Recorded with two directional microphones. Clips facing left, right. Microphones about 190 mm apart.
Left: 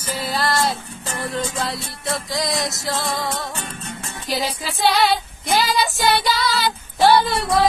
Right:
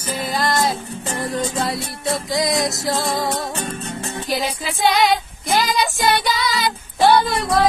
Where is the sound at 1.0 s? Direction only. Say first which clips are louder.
Right 2 dB; 30° right (ahead or behind).